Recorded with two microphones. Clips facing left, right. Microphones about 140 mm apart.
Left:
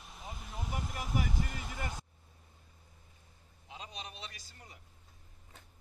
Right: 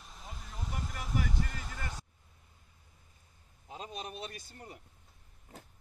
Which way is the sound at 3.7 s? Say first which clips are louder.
Right 5 dB; 45° right (ahead or behind).